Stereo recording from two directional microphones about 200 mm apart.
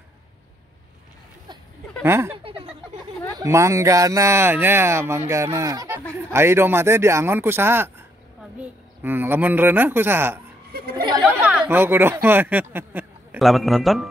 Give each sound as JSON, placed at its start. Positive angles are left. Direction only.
{"t": 2.0, "sound": "speech", "side_deg": -10}
{"t": 2.3, "sound": "a sound", "side_deg": -30}
{"t": 3.3, "sound": "speech", "side_deg": -15}
{"t": 11.0, "sound": "chatter", "side_deg": -20}
{"t": 11.2, "sound": "speech", "side_deg": -5}